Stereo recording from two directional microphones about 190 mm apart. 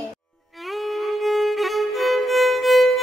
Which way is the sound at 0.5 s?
Centre (ahead or behind).